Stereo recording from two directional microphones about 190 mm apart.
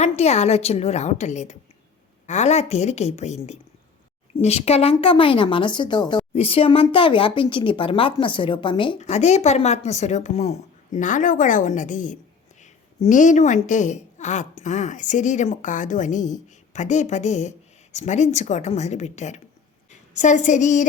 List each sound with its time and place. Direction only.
0.0 s a woman's voice: 35° left (ahead or behind)